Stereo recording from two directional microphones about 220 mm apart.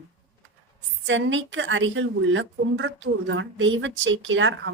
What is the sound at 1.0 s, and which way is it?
A woman's voice, 60° right (ahead or behind).